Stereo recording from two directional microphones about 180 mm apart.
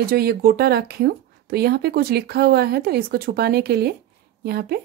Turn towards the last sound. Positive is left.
turn(degrees=-60)  # may be behind; listen again after turning